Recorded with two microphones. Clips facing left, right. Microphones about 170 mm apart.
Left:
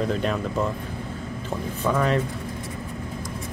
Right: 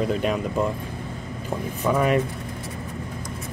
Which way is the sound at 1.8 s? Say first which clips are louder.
Right 2 dB; 15° right (ahead or behind).